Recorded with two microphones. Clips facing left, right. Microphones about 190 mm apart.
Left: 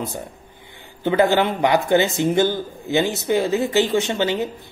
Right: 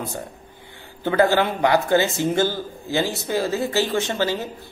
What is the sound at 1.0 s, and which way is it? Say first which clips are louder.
A man's voice: left 1 dB; 20° left (ahead or behind).